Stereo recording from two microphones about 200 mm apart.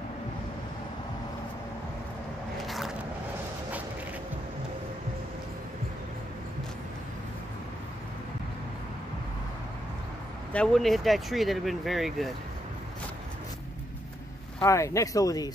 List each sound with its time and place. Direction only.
2.6 s vehicle: centre (ahead or behind)
10.5 s speech: 5° left (ahead or behind)
14.6 s speech: 15° left (ahead or behind)